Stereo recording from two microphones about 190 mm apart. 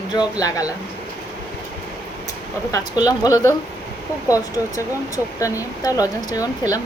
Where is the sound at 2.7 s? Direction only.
20° left (ahead or behind).